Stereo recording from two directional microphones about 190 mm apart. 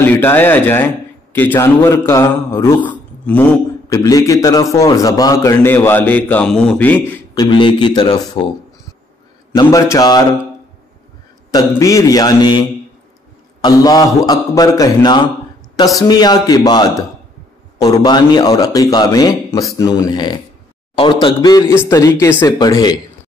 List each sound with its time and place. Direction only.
0.0 s a man's voice: 10° left (ahead or behind)
7.1 s a man's voice: 20° left (ahead or behind)
9.6 s a man's voice: 20° left (ahead or behind)
11.5 s a man's voice: 20° left (ahead or behind)